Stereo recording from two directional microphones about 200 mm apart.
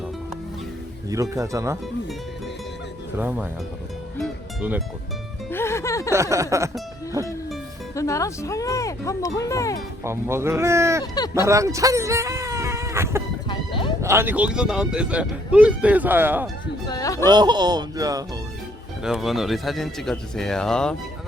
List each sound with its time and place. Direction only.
1.1 s speech: 15° right (ahead or behind)
3.2 s speech: 10° right (ahead or behind)
4.2 s music: 5° right (ahead or behind)
5.5 s music: 10° left (ahead or behind)
6.1 s speech: 15° right (ahead or behind)
7.9 s speech: 15° left (ahead or behind)
10.0 s speech: 15° right (ahead or behind)
11.0 s speech: 20° left (ahead or behind)
11.3 s speech: 15° right (ahead or behind)
13.5 s music: 25° left (ahead or behind)
14.0 s speech: 10° right (ahead or behind)
16.8 s a sound: 20° left (ahead or behind)
17.2 s speech: 20° right (ahead or behind)
19.0 s speech: centre (ahead or behind)